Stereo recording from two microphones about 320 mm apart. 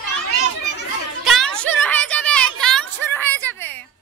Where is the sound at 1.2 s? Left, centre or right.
Centre.